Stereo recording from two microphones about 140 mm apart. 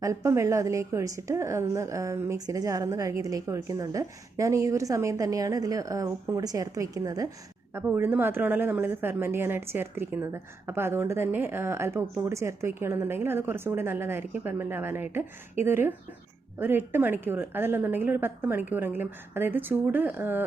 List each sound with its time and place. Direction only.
0.0 s a woman's voice: 20° right (ahead or behind)